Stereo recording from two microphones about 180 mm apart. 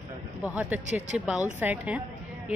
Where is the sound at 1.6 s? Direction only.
10° right (ahead or behind).